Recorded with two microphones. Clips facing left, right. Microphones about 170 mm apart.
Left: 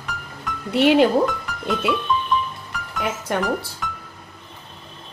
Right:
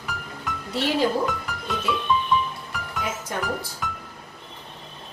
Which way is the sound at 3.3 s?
70° left (ahead or behind).